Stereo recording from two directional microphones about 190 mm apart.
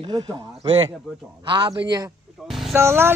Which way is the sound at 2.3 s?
Centre (ahead or behind).